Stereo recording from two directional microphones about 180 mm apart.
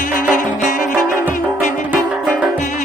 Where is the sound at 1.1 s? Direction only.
10° right (ahead or behind).